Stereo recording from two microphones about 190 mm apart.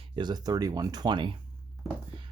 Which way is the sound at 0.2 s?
20° right (ahead or behind).